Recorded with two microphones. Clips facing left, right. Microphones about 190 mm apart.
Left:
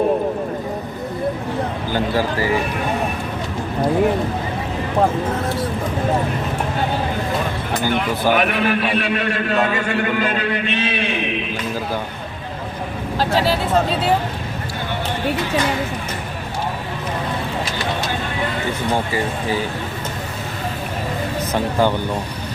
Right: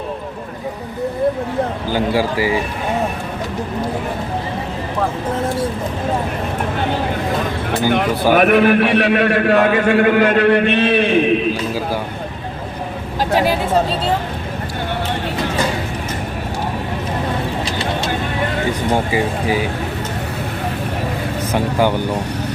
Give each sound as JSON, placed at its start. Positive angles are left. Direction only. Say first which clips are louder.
{"t": 1.9, "sound": "a man's voice", "louder": "right 1 dB", "side_deg": -10}
{"t": 8.3, "sound": "a man's voice", "louder": "right 7 dB", "side_deg": -50}
{"t": 21.5, "sound": "a man's voice", "louder": "right 2 dB", "side_deg": -15}